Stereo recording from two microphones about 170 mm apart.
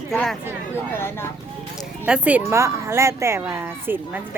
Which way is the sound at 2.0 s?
5° right (ahead or behind).